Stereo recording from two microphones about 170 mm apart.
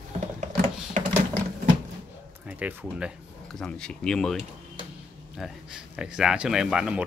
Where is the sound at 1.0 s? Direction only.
45° right (ahead or behind).